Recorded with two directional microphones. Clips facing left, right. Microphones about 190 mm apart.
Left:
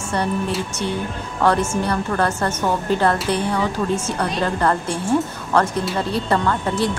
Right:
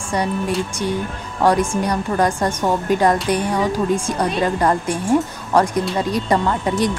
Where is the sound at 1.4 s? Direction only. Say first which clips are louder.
Right 2 dB; 15° right (ahead or behind).